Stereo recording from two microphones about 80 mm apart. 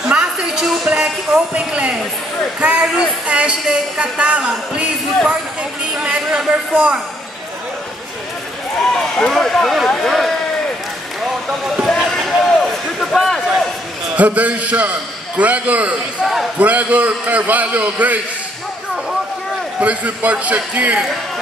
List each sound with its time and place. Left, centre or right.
0.1 s a sound: centre
2.6 s a man's voice: centre
8.9 s speech: centre
11.9 s basketball bounce: centre
14.1 s a man's voice: centre
19.8 s a man's voice: centre